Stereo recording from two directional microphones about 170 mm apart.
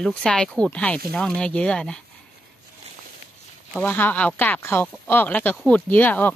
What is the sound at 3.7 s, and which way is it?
Speech, 10° left (ahead or behind).